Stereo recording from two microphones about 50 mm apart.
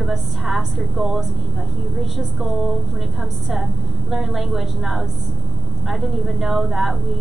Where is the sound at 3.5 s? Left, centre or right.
Centre.